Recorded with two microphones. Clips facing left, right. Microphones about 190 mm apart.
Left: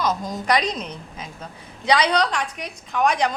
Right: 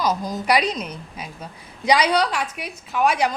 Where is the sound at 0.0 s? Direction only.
Centre (ahead or behind).